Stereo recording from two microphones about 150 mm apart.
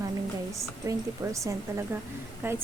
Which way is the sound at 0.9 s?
20° right (ahead or behind).